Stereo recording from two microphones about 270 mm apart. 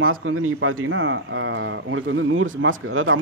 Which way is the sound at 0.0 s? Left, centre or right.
Right.